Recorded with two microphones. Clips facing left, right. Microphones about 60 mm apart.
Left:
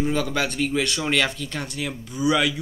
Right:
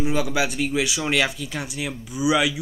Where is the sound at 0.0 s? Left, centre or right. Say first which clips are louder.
Right 1 dB; centre.